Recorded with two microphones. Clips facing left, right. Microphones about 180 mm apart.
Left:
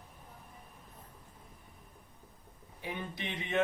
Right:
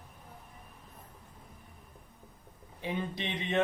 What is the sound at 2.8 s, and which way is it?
Speech, 20° right (ahead or behind).